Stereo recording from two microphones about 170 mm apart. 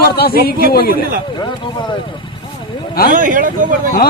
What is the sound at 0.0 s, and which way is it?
Speech, 65° left (ahead or behind).